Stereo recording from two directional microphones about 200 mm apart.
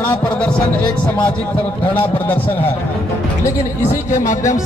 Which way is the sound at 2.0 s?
10° left (ahead or behind).